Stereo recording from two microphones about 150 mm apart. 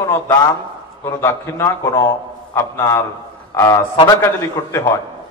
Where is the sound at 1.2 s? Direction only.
20° left (ahead or behind).